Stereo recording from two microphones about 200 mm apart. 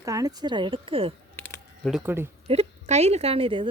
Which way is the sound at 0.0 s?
15° right (ahead or behind).